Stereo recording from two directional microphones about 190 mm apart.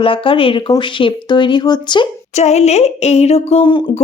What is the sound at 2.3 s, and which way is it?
Speech, 35° left (ahead or behind).